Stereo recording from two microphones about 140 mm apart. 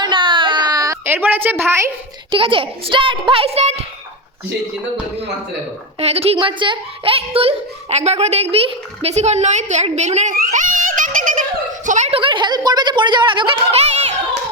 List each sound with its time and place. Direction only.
0.0 s a sound: 35° right (ahead or behind); by 1.8 s 15° right (ahead or behind)
2.3 s speech: 40° right (ahead or behind)
6.0 s a woman's voice: 45° right (ahead or behind)
10.3 s giggle: 65° right (ahead or behind)
11.9 s a sound: 60° right (ahead or behind)
12.1 s speech: 35° right (ahead or behind)
13.7 s a woman's voice: 50° right (ahead or behind)